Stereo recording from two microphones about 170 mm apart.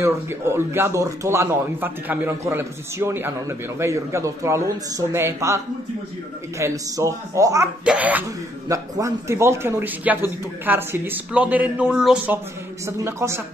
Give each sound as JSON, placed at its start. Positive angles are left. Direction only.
{"t": 0.0, "sound": "a man's voice", "side_deg": -15}
{"t": 6.6, "sound": "speech", "side_deg": -20}
{"t": 7.8, "sound": "a man's voice", "side_deg": -5}
{"t": 12.8, "sound": "a man's voice", "side_deg": -15}